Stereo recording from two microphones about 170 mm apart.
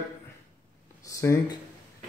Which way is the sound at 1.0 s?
20° left (ahead or behind).